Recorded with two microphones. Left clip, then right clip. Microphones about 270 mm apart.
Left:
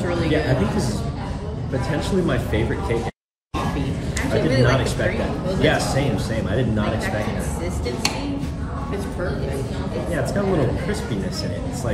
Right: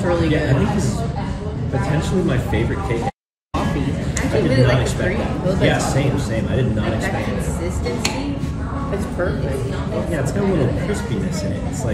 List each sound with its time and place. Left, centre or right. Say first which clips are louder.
2.0 s speech: left 1 dB; centre
4.5 s a woman's voice: right 1 dB; centre
5.6 s speech: even; centre